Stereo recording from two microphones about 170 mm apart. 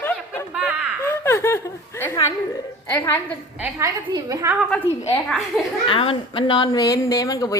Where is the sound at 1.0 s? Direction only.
15° left (ahead or behind).